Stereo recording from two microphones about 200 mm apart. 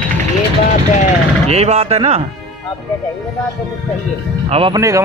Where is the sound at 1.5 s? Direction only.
30° right (ahead or behind).